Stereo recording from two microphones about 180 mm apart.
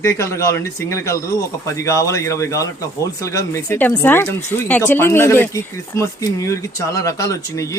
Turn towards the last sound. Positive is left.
turn(degrees=15)  # may be behind; listen again after turning